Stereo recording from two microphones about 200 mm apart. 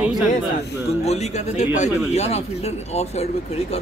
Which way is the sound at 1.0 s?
35° left (ahead or behind).